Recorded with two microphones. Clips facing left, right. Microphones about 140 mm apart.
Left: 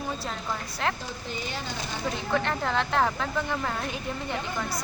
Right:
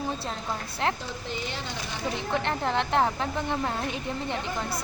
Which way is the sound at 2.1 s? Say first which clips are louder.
Left 1 dB; 20° right (ahead or behind).